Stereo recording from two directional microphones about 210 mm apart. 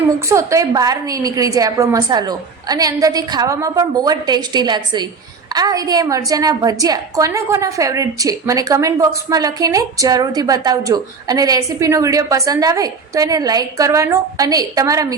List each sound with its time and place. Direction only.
0.0 s a woman's voice: 15° right (ahead or behind)